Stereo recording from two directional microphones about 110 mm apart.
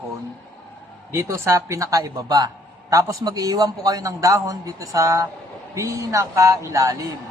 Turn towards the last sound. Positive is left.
turn(degrees=-30)  # may be behind; listen again after turning